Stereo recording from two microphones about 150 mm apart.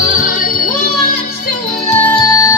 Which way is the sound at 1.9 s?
15° left (ahead or behind).